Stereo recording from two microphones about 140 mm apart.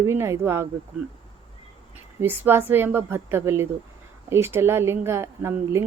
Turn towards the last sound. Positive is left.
turn(degrees=-20)  # may be behind; listen again after turning